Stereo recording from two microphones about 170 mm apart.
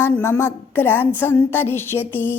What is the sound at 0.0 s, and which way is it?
A woman's voice, 15° left (ahead or behind).